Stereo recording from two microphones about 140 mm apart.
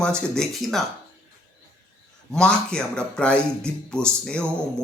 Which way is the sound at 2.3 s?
5° left (ahead or behind).